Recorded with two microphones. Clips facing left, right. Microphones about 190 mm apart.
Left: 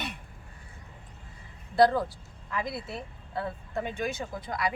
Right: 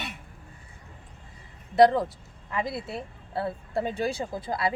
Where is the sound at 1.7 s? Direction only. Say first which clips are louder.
Right 3 dB; 20° right (ahead or behind).